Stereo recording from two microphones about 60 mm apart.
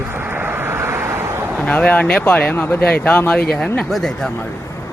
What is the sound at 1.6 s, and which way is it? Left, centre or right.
Speech, left.